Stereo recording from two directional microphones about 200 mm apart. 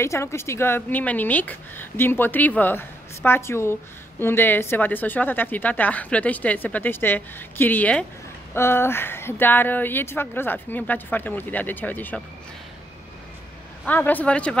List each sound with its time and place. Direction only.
0.0 s a woman's voice: 15° left (ahead or behind)
13.8 s a woman's voice: 10° left (ahead or behind)